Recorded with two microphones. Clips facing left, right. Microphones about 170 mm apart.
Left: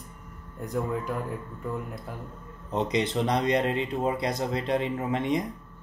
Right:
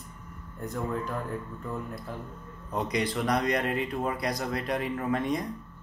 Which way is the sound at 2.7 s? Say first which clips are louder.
Left 3 dB; 25° left (ahead or behind).